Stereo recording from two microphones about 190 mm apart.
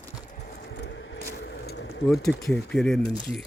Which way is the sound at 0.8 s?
70° left (ahead or behind).